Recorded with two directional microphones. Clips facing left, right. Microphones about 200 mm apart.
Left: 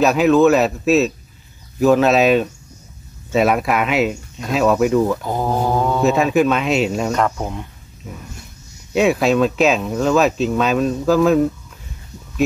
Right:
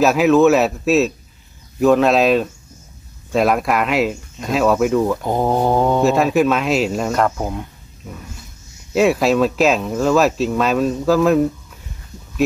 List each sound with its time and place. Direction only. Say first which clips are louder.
0.0 s speech: even; centre (ahead or behind)
5.2 s mantra: right 3 dB; 20° right (ahead or behind)
6.0 s speech: even; centre (ahead or behind)
8.9 s speech: even; centre (ahead or behind)